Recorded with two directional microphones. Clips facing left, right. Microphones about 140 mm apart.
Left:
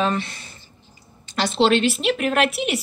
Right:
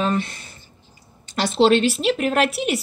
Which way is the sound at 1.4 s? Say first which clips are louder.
Right 2 dB; 40° right (ahead or behind).